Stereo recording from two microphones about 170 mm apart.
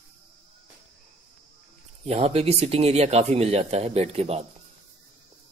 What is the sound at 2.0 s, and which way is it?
Speech, 35° right (ahead or behind).